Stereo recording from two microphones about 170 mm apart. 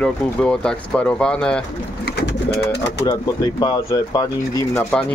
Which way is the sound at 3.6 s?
25° left (ahead or behind).